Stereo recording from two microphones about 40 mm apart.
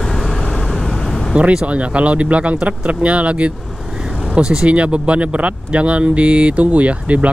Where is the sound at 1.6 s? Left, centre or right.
Right.